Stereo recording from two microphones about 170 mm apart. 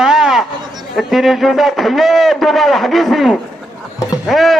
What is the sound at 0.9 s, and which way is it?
A man's voice, centre (ahead or behind).